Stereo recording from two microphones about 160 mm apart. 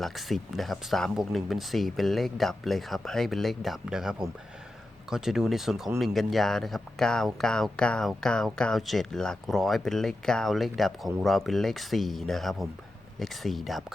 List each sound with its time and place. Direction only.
0.0 s speech: centre (ahead or behind)